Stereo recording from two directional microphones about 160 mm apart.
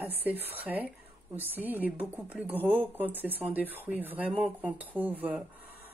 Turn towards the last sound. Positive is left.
turn(degrees=-10)  # may be behind; listen again after turning